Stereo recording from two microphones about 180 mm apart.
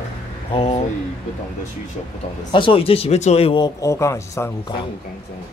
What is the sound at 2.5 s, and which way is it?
Speech, 30° left (ahead or behind).